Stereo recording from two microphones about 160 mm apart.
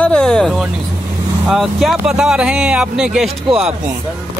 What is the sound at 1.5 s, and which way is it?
Speech, centre (ahead or behind).